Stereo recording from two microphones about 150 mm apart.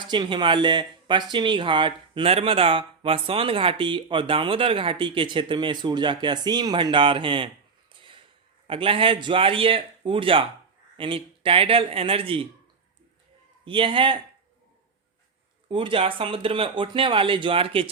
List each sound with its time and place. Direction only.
0.1 s speech: 30° right (ahead or behind)
8.6 s speech: 40° right (ahead or behind)
13.7 s speech: 35° right (ahead or behind)
15.7 s speech: 35° right (ahead or behind)